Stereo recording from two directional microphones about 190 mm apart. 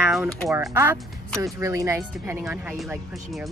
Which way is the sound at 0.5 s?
15° right (ahead or behind).